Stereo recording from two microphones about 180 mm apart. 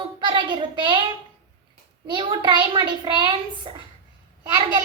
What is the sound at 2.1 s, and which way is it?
A child's voice, 25° right (ahead or behind).